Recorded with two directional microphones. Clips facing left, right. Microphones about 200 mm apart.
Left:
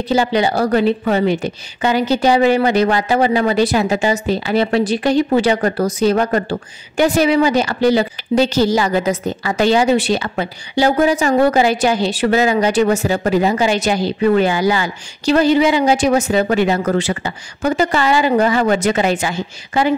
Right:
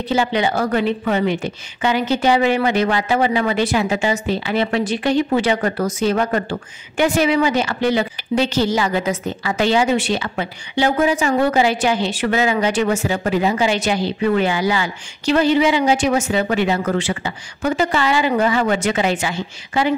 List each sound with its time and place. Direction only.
0.1 s a woman's voice: 35° left (ahead or behind)